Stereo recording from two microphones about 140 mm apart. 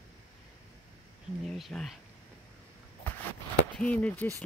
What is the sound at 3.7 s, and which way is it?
Speech, 10° left (ahead or behind).